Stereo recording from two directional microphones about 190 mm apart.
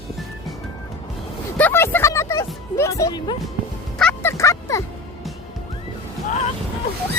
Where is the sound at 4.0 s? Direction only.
10° left (ahead or behind).